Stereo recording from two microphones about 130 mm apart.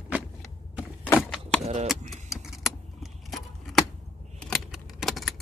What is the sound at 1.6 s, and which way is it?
Keys jangling, 60° right (ahead or behind).